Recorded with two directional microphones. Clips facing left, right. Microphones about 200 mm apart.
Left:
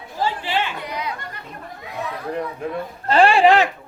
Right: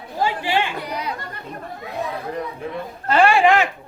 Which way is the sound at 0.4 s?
15° right (ahead or behind).